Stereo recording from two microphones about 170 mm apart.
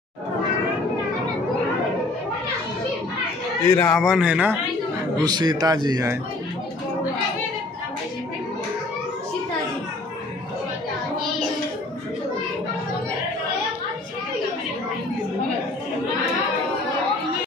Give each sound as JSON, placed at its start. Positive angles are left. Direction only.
{"t": 3.7, "sound": "a man's voice", "side_deg": 15}
{"t": 4.0, "sound": "a man's voice", "side_deg": -5}
{"t": 5.2, "sound": "speech", "side_deg": -25}